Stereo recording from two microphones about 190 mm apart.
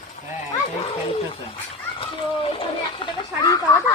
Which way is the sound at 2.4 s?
25° left (ahead or behind).